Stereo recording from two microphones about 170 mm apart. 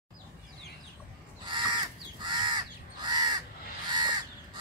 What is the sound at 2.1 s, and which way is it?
Crow, 25° right (ahead or behind).